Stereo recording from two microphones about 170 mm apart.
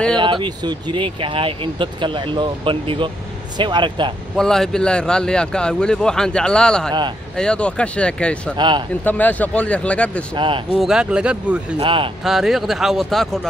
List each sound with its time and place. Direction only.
0.2 s speech: 30° right (ahead or behind)
4.4 s a man's voice: 5° left (ahead or behind)
8.5 s speech: 25° right (ahead or behind)
9.0 s speech: 10° left (ahead or behind)
10.3 s speech: 30° right (ahead or behind)
10.7 s a man's voice: centre (ahead or behind)
11.8 s speech: 30° right (ahead or behind)
12.3 s a man's voice: centre (ahead or behind)